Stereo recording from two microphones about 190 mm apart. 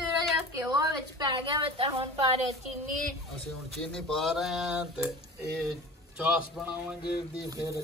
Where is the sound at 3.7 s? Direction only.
Centre (ahead or behind).